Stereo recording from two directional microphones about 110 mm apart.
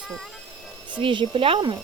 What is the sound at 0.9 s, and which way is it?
Speech, 50° right (ahead or behind).